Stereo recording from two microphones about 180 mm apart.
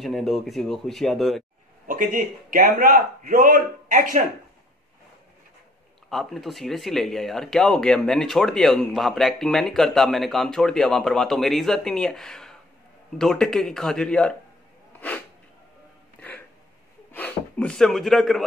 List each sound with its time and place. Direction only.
0.0 s speech: centre (ahead or behind)
1.9 s a man's voice: 50° right (ahead or behind)
6.0 s speech: centre (ahead or behind)
14.9 s snort: 10° left (ahead or behind)
16.2 s music: 10° left (ahead or behind)
17.1 s speech: 10° left (ahead or behind)